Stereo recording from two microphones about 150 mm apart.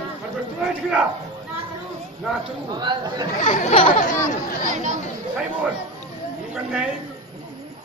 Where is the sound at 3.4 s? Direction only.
50° left (ahead or behind).